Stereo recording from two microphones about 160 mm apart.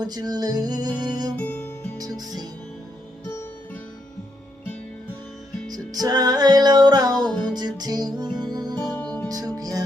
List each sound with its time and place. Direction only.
0.0 s music: 25° right (ahead or behind)
1.4 s music: 10° left (ahead or behind)
2.0 s music: 25° right (ahead or behind)
5.7 s music: 25° right (ahead or behind)
7.3 s music: 5° left (ahead or behind)
7.5 s music: 25° right (ahead or behind)
8.8 s music: 10° left (ahead or behind)
9.3 s music: 20° right (ahead or behind)